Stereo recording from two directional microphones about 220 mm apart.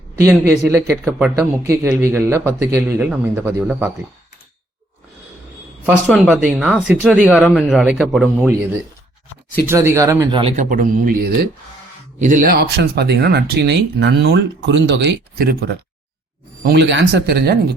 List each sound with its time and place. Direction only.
0.2 s a man's voice: 10° right (ahead or behind)
5.8 s speech: 5° right (ahead or behind)
9.6 s a man's voice: 10° right (ahead or behind)
10.4 s speech: 35° right (ahead or behind)